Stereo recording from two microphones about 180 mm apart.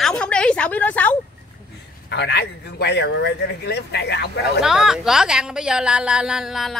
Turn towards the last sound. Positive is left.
turn(degrees=0)  # may be behind; listen again after turning